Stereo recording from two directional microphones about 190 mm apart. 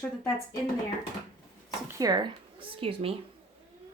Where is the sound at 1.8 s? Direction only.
20° right (ahead or behind).